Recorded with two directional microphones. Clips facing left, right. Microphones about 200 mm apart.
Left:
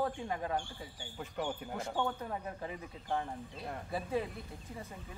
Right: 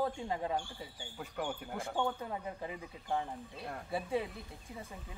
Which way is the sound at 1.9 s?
10° right (ahead or behind).